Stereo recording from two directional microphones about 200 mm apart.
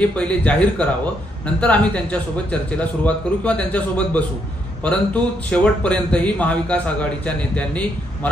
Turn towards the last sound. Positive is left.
turn(degrees=5)  # may be behind; listen again after turning